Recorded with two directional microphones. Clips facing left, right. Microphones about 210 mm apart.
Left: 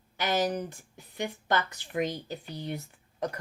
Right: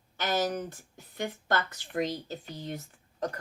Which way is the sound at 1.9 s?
10° left (ahead or behind).